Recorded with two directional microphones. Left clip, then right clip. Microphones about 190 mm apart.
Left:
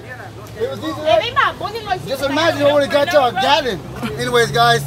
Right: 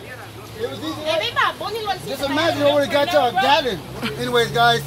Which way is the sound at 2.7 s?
10° left (ahead or behind).